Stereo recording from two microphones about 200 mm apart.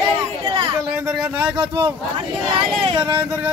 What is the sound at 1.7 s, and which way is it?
Speech, 20° right (ahead or behind).